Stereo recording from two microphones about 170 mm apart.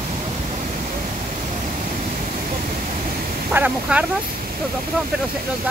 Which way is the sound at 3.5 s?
10° right (ahead or behind).